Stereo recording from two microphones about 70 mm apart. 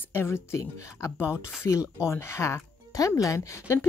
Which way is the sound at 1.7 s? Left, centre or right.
Left.